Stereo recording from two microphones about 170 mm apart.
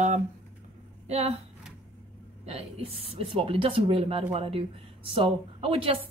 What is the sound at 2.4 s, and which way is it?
Speech, 35° right (ahead or behind).